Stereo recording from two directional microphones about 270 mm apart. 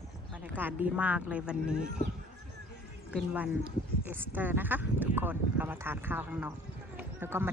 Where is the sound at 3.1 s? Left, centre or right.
Centre.